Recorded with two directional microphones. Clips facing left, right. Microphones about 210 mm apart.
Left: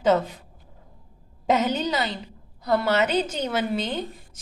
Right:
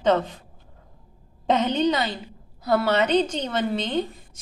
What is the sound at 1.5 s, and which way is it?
A woman's voice, 5° left (ahead or behind).